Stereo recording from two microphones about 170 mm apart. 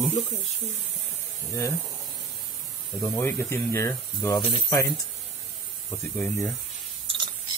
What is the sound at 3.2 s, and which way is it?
Speech, 15° left (ahead or behind).